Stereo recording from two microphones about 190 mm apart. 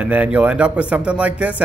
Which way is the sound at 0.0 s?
10° right (ahead or behind).